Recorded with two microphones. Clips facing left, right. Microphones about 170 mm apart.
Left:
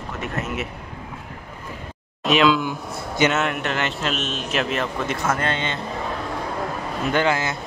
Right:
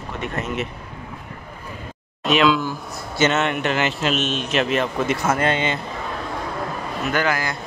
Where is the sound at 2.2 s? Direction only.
Centre (ahead or behind).